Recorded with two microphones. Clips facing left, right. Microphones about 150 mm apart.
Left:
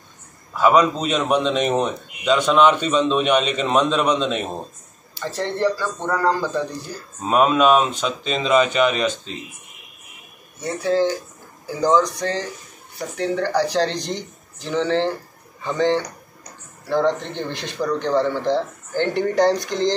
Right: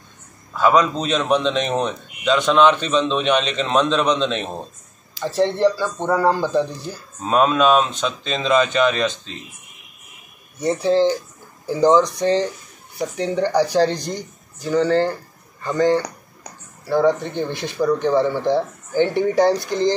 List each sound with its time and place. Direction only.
0.5 s a man's voice: 10° left (ahead or behind)
5.2 s speech: 15° right (ahead or behind)
7.2 s a man's voice: 10° left (ahead or behind)
10.6 s speech: 25° right (ahead or behind); by 19.5 s 10° right (ahead or behind)